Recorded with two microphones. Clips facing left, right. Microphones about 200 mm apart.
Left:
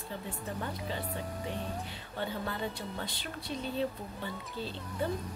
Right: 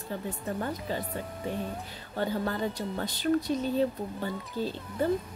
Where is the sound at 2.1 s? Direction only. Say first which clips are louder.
Right 6 dB; 40° right (ahead or behind).